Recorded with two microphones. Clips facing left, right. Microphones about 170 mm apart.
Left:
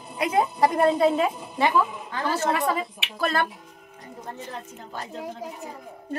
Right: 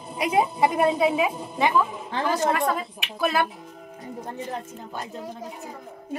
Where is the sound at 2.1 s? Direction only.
20° right (ahead or behind).